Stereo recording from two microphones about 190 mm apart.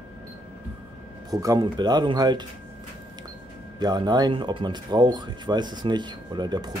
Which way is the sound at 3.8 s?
20° right (ahead or behind).